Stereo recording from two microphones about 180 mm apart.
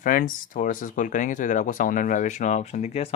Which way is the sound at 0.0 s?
50° left (ahead or behind).